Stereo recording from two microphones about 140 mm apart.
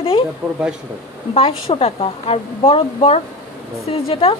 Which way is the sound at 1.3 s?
45° left (ahead or behind).